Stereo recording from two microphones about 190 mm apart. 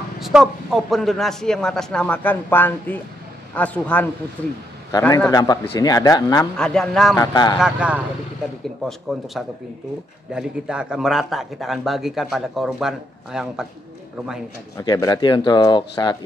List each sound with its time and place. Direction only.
0.2 s a man's voice: centre (ahead or behind)
5.3 s speech: 20° left (ahead or behind)
6.5 s a man's voice: 5° left (ahead or behind)
7.2 s speech: 20° left (ahead or behind)
7.6 s speech: 5° right (ahead or behind)
9.1 s a man's voice: centre (ahead or behind)
10.3 s a man's voice: 5° right (ahead or behind)
14.8 s speech: 20° left (ahead or behind)